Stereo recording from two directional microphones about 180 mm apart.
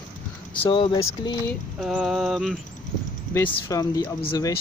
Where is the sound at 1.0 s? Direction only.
15° left (ahead or behind).